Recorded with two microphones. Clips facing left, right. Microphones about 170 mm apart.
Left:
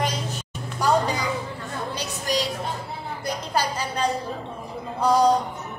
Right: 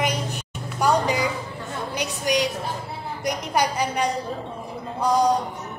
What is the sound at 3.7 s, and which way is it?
Speech, 15° right (ahead or behind).